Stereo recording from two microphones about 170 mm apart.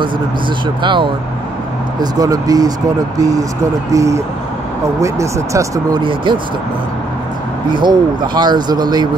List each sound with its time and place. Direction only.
0.8 s speech: 30° right (ahead or behind)
7.7 s speech: 25° right (ahead or behind)